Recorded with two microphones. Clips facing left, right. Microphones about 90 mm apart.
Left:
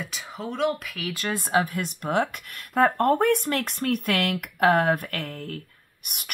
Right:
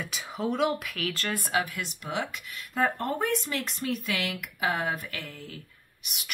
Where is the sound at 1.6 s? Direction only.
45° left (ahead or behind).